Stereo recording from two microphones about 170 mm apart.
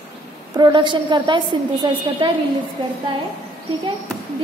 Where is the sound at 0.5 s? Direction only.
25° right (ahead or behind).